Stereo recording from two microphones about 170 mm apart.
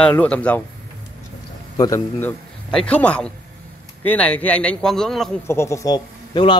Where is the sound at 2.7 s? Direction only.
5° left (ahead or behind).